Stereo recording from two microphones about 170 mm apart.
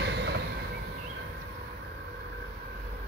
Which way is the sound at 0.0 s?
90° right.